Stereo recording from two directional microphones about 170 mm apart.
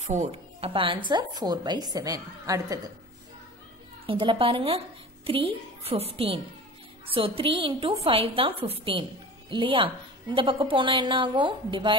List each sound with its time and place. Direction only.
0.0 s a woman's voice: 45° right (ahead or behind); by 2.8 s 20° right (ahead or behind)
4.0 s a woman's voice: 30° right (ahead or behind)